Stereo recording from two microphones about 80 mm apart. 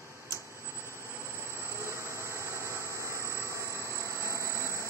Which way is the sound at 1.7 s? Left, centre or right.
Right.